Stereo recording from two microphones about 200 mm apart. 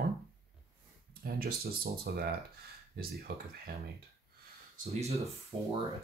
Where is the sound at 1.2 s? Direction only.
50° right (ahead or behind).